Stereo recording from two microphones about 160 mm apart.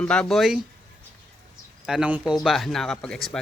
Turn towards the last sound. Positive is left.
turn(degrees=5)  # may be behind; listen again after turning